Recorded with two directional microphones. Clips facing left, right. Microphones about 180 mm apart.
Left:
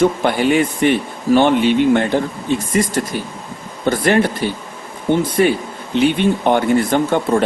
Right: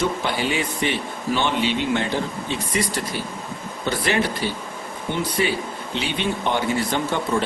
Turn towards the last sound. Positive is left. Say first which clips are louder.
# left 7 dB
turn(degrees=50)  # may be behind; listen again after turning